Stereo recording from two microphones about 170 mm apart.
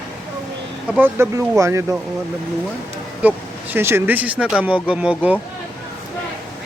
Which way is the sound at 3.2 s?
10° right (ahead or behind).